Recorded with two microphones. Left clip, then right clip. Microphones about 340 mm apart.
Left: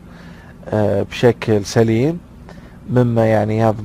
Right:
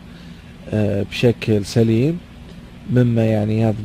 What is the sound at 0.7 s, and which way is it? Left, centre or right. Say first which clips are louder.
Speech: left 5 dB; left.